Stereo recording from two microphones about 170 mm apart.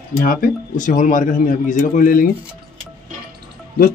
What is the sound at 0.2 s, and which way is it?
Speech, 55° left (ahead or behind).